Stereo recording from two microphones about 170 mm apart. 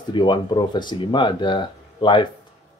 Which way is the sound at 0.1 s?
25° left (ahead or behind).